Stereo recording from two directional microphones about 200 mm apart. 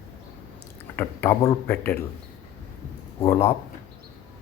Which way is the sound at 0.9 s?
10° left (ahead or behind).